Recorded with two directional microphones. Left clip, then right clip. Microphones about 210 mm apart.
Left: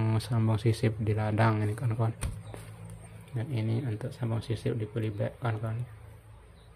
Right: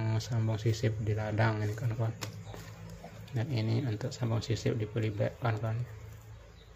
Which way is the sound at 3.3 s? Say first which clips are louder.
Even; centre (ahead or behind).